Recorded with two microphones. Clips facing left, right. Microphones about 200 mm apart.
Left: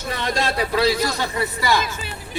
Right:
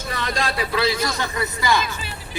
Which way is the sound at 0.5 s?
40° left (ahead or behind).